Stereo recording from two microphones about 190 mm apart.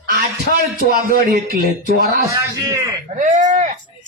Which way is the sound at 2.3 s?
15° right (ahead or behind).